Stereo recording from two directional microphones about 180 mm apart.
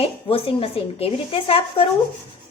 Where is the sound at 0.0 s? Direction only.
30° left (ahead or behind).